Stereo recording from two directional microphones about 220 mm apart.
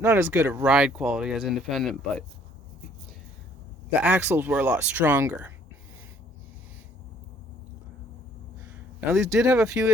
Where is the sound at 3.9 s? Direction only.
5° right (ahead or behind).